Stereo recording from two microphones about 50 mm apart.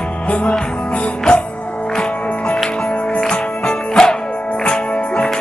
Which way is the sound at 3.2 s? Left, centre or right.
Centre.